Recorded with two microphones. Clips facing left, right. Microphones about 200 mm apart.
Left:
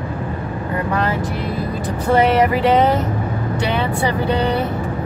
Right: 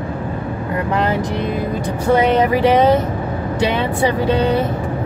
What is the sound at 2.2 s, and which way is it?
Vehicle, 15° right (ahead or behind).